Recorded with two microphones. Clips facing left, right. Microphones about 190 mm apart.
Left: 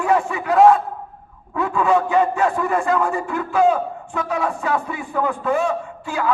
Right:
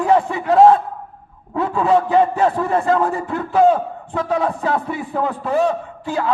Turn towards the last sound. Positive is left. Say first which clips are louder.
# right 1 dB
turn(degrees=-35)  # may be behind; listen again after turning